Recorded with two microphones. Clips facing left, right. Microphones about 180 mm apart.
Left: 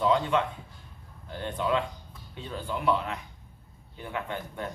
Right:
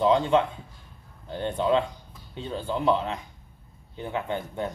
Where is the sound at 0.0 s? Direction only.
25° right (ahead or behind).